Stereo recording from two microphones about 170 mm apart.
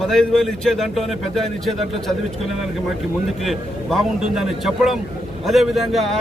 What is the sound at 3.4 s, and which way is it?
A man's voice, centre (ahead or behind).